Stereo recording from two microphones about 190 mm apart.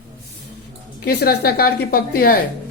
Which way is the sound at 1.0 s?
55° left (ahead or behind).